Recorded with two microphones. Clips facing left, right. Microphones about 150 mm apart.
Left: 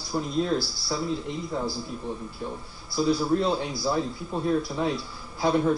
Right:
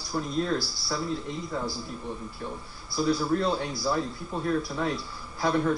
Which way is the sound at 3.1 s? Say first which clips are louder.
Left 2 dB; 20° left (ahead or behind).